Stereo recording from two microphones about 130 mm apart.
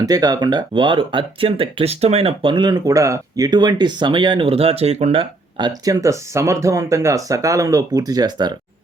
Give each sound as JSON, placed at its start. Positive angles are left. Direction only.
{"t": 0.0, "sound": "speech", "side_deg": -30}
{"t": 5.5, "sound": "speech", "side_deg": -30}